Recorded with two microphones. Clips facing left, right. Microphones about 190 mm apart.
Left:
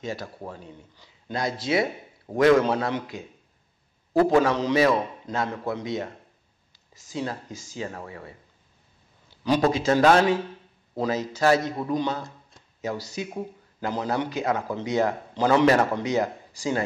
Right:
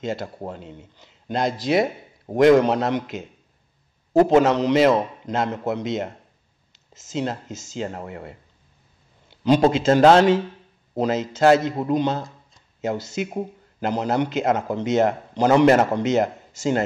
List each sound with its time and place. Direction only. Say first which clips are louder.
0.1 s a man's voice: right 5 dB; 25° right (ahead or behind)
9.5 s a man's voice: right 5 dB; 25° right (ahead or behind)